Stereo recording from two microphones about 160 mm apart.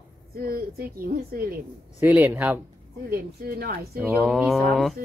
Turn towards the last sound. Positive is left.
turn(degrees=0)  # may be behind; listen again after turning